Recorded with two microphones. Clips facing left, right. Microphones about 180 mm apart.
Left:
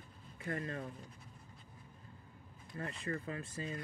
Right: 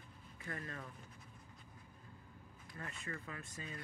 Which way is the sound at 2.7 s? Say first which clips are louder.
Left 7 dB; 35° left (ahead or behind).